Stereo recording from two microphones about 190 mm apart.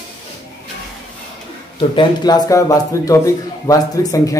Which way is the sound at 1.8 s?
25° left (ahead or behind).